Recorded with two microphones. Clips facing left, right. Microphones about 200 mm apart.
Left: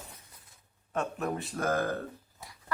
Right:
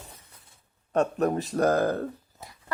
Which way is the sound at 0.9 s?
40° right (ahead or behind).